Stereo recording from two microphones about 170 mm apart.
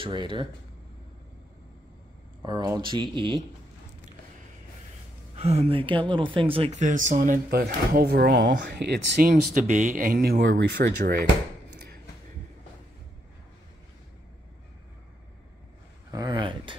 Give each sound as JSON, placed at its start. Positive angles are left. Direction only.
{"t": 0.0, "sound": "speech", "side_deg": -25}
{"t": 2.4, "sound": "speech", "side_deg": -20}
{"t": 5.3, "sound": "speech", "side_deg": -40}
{"t": 6.8, "sound": "speech", "side_deg": -50}
{"t": 9.3, "sound": "speech", "side_deg": -50}
{"t": 10.4, "sound": "speech", "side_deg": -75}
{"t": 16.1, "sound": "a sound", "side_deg": -25}